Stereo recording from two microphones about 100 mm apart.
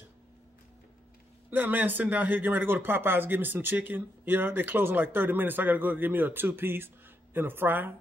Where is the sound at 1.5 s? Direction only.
20° right (ahead or behind).